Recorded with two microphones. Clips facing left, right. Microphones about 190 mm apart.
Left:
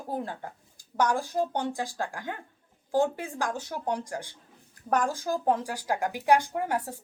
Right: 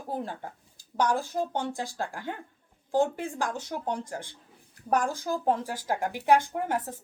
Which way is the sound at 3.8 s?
15° left (ahead or behind).